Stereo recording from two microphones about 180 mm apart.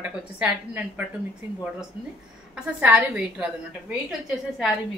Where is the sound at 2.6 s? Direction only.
10° right (ahead or behind).